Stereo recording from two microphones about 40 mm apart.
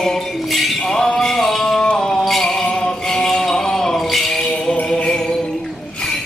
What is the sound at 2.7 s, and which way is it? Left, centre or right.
Mantra, centre.